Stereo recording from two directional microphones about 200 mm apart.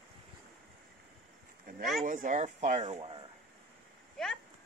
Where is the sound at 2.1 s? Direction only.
40° right (ahead or behind).